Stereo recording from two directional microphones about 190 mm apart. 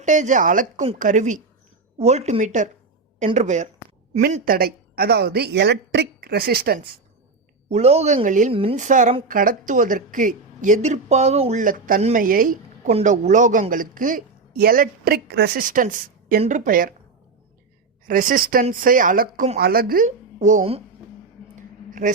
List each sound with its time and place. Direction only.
0.0 s a woman's voice: 40° right (ahead or behind)
7.7 s a woman's voice: 35° right (ahead or behind)
12.9 s speech: 35° right (ahead or behind)
18.0 s speech: 45° right (ahead or behind)
21.8 s a sound: 45° right (ahead or behind)